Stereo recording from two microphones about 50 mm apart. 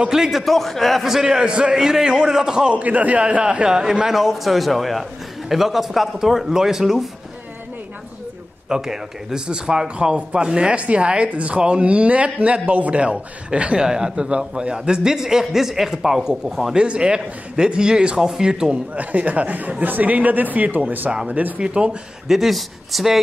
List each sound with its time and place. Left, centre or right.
0.1 s a man's voice: centre
0.4 s a man's voice: centre
2.7 s speech: right
3.4 s a man's voice: centre
8.6 s a man's voice: centre
18.9 s speech: right
21.5 s speech: right
22.3 s speech: centre